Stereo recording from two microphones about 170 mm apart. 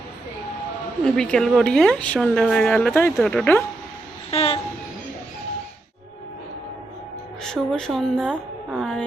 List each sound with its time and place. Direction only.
1.0 s speech: 5° left (ahead or behind)
4.3 s train: 35° left (ahead or behind)
7.4 s speech: 5° left (ahead or behind)